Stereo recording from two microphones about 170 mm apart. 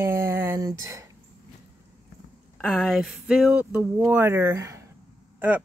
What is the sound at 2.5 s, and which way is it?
Speech, centre (ahead or behind).